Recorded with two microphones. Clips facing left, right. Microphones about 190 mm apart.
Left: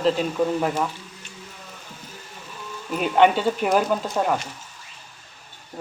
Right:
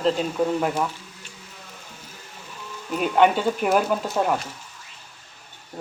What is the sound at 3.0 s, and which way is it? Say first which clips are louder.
Speech: left 1 dB; 5° right (ahead or behind).